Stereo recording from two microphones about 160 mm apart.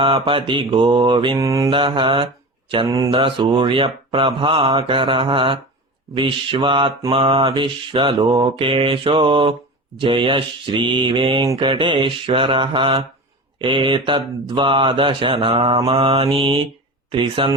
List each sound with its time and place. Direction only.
0.0 s mantra: 35° right (ahead or behind)
1.7 s mantra: 30° right (ahead or behind)
2.8 s mantra: 20° right (ahead or behind)
3.1 s mantra: 35° right (ahead or behind)